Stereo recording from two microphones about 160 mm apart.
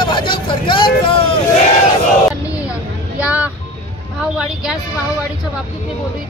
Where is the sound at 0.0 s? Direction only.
30° left (ahead or behind).